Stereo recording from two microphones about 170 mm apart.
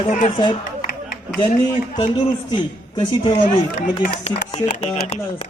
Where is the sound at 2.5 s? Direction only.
30° left (ahead or behind).